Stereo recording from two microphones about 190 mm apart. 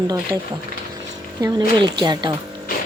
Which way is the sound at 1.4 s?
20° right (ahead or behind).